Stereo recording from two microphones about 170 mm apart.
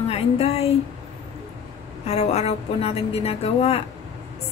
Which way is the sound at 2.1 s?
40° left (ahead or behind).